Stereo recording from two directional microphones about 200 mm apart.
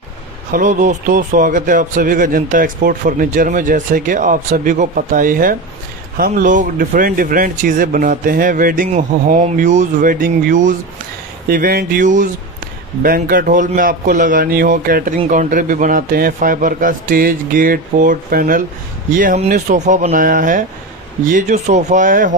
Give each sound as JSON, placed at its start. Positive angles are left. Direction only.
{"t": 0.5, "sound": "a man's voice", "side_deg": -40}